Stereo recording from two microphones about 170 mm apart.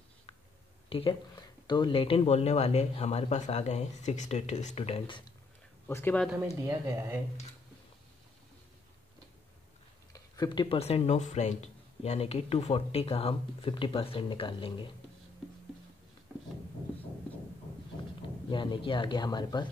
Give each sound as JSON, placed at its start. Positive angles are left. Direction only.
{"t": 0.8, "sound": "speech", "side_deg": 30}
{"t": 5.9, "sound": "speech", "side_deg": 15}
{"t": 6.7, "sound": "speech", "side_deg": -15}
{"t": 10.1, "sound": "speech", "side_deg": 20}
{"t": 18.5, "sound": "speech", "side_deg": 30}